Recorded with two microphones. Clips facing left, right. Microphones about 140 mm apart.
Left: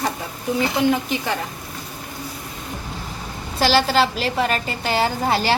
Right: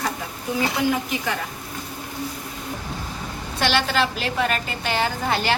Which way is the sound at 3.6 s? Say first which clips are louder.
Left 4 dB; 35° left (ahead or behind).